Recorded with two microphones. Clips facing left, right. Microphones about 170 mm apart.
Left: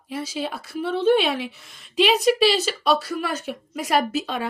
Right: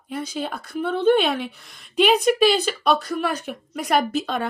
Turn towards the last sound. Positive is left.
turn(degrees=5)  # may be behind; listen again after turning